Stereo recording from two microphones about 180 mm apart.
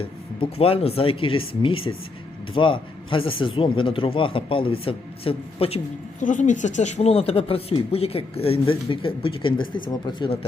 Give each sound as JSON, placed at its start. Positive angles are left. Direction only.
{"t": 0.0, "sound": "speech", "side_deg": 30}